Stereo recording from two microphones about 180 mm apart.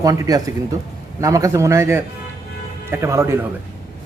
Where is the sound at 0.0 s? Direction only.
20° right (ahead or behind).